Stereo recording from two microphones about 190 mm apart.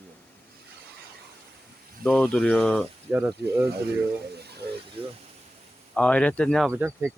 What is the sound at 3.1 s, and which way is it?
Speech, 10° right (ahead or behind).